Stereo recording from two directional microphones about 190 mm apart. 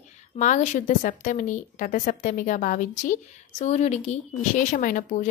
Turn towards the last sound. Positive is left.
turn(degrees=45)  # may be behind; listen again after turning